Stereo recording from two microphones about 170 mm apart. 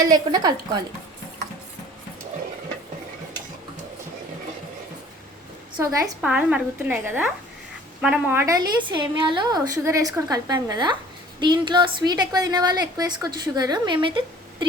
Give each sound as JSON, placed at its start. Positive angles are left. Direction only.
{"t": 0.0, "sound": "a woman's voice", "side_deg": -20}
{"t": 5.7, "sound": "a woman's voice", "side_deg": -20}
{"t": 6.2, "sound": "a woman's voice", "side_deg": -10}